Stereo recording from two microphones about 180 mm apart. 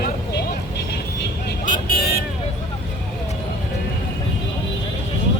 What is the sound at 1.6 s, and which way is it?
Vehicle, 45° left (ahead or behind).